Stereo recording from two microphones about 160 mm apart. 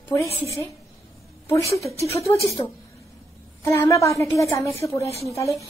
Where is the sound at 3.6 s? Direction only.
20° left (ahead or behind).